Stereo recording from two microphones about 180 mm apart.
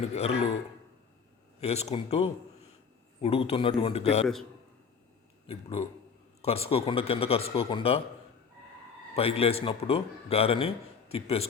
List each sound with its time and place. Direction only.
0.0 s a man's voice: 35° left (ahead or behind)
1.6 s a man's voice: 35° left (ahead or behind)
5.5 s a man's voice: 30° left (ahead or behind)
9.1 s a man's voice: 35° left (ahead or behind)